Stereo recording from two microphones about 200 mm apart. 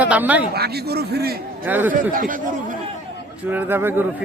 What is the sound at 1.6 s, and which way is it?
Speech, 10° right (ahead or behind).